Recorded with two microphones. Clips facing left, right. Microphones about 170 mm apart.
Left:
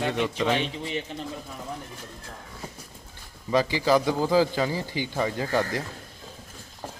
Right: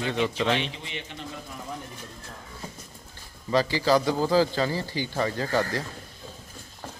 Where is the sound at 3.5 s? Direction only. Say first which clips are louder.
Even; 15° left (ahead or behind).